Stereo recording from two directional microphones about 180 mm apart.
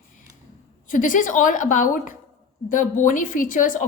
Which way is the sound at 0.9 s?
50° left (ahead or behind).